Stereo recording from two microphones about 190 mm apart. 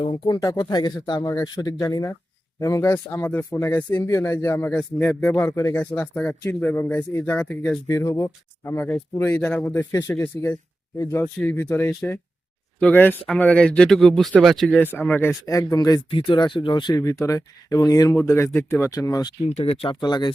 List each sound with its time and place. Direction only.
0.0 s speech: 25° left (ahead or behind)
19.5 s speech: 35° left (ahead or behind)